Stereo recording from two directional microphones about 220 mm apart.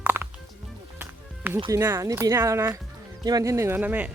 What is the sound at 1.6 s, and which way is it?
Speech, 10° right (ahead or behind).